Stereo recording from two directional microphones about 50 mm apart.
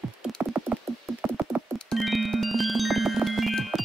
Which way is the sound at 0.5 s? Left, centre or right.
Right.